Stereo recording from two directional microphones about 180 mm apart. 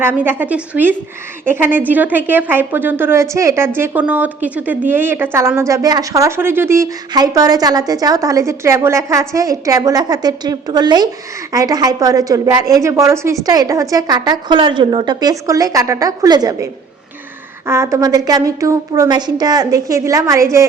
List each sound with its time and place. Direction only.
0.0 s a woman's voice: 10° right (ahead or behind)
17.7 s a woman's voice: 15° right (ahead or behind)